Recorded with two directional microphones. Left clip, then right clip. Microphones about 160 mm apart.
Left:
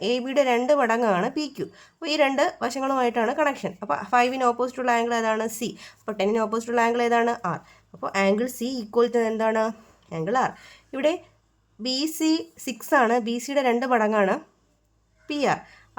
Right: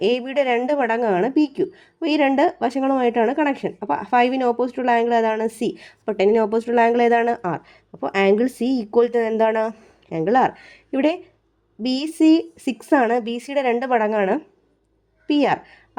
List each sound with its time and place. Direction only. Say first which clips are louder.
0.0 s speech: right 3 dB; 35° right (ahead or behind)